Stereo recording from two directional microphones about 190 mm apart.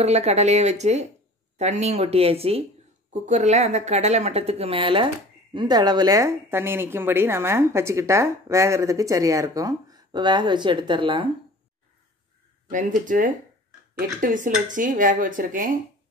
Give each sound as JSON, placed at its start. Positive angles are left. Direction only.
{"t": 0.0, "sound": "a woman's voice", "side_deg": -35}
{"t": 12.6, "sound": "speech", "side_deg": -40}